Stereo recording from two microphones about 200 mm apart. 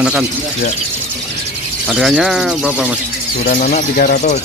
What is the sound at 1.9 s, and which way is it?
Speech, centre (ahead or behind).